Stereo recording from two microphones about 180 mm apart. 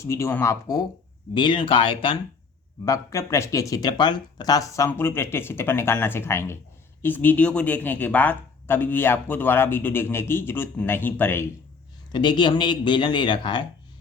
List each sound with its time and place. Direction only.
0.0 s speech: 15° left (ahead or behind)
2.8 s speech: 15° left (ahead or behind)
12.1 s speech: 25° left (ahead or behind)